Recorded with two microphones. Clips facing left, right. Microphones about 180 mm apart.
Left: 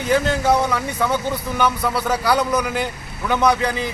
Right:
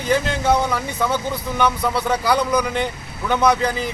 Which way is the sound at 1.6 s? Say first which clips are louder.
Right 1 dB; centre (ahead or behind).